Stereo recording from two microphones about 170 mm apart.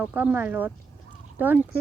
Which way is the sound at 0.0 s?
10° right (ahead or behind).